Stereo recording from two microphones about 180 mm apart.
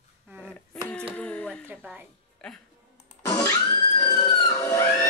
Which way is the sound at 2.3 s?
5° left (ahead or behind).